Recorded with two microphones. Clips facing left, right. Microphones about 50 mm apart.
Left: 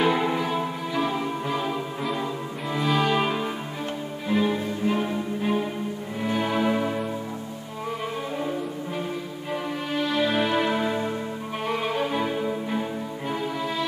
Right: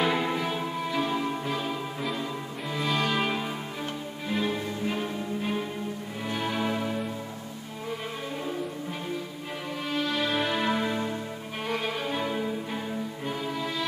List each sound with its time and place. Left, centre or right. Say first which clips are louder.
0.0 s music: left 4 dB; centre
9.9 s music: left 4 dB; centre
11.6 s violin: left 3 dB; centre
12.1 s music: left 3 dB; centre